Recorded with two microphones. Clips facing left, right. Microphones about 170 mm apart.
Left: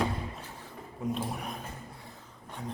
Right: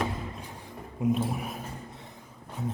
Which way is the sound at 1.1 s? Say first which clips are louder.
Right 4 dB; 5° right (ahead or behind).